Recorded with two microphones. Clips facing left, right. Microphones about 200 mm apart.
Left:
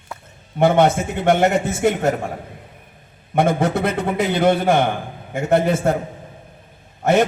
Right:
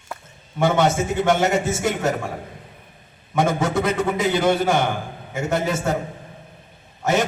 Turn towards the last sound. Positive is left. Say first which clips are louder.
# left 5 dB
turn(degrees=55)  # may be behind; listen again after turning